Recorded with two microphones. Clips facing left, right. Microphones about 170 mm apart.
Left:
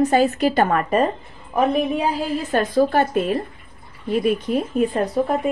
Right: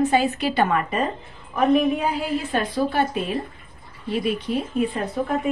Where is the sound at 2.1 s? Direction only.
40° left (ahead or behind).